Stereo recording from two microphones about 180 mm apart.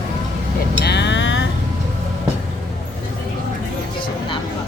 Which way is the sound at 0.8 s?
70° left (ahead or behind).